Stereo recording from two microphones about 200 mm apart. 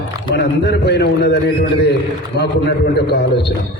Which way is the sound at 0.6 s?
55° left (ahead or behind).